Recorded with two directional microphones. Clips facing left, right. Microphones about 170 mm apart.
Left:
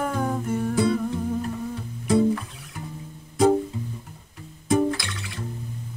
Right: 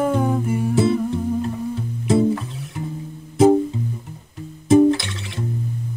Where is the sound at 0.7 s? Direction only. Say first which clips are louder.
Right 4 dB; 25° right (ahead or behind).